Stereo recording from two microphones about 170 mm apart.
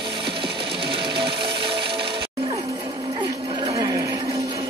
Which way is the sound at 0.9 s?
30° right (ahead or behind).